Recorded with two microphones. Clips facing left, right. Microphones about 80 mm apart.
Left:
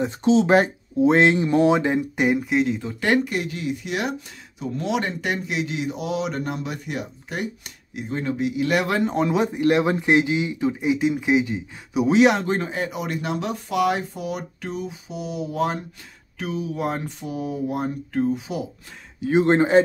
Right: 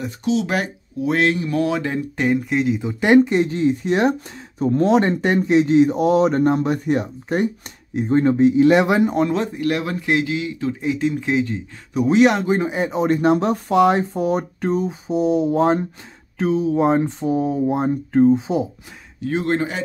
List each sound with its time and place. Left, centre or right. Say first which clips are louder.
0.0 s speech: left 3 dB; left; by 2.4 s centre
2.5 s speech: right 2 dB; centre
2.8 s speech: right 7 dB; centre
9.1 s speech: right 2 dB; centre
9.4 s speech: left 2 dB; left; by 12.4 s centre
12.4 s speech: right 5 dB; centre
19.4 s speech: left 7 dB; left